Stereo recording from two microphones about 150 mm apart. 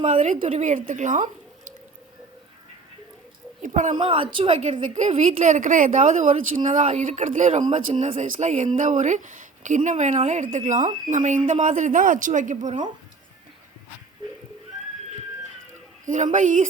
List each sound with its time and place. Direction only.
0.0 s a woman's voice: 55° right (ahead or behind)
3.6 s a woman's voice: 55° right (ahead or behind)
3.9 s speech: 35° right (ahead or behind)
4.6 s speech: 55° right (ahead or behind)
16.0 s speech: 55° right (ahead or behind)